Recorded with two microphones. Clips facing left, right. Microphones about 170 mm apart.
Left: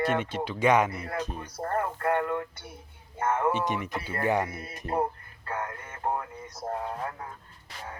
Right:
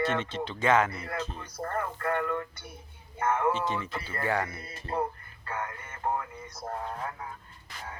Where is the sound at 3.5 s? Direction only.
15° left (ahead or behind).